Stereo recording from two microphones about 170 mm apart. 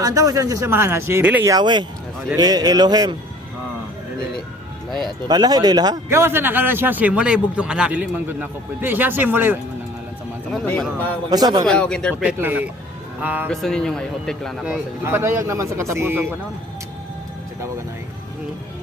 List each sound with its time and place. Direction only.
0.0 s a man's voice: 20° right (ahead or behind)
1.5 s speech: 25° right (ahead or behind)
4.9 s speech: centre (ahead or behind)
5.3 s a man's voice: 25° right (ahead or behind)
10.5 s speech: centre (ahead or behind)
11.3 s speech: 25° right (ahead or behind)
11.6 s speech: 5° left (ahead or behind)
12.2 s a man's voice: 10° right (ahead or behind)
13.5 s a man's voice: 5° left (ahead or behind); by 16.2 s 15° right (ahead or behind)